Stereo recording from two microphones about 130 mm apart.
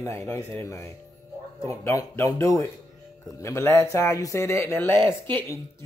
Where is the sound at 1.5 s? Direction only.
25° left (ahead or behind).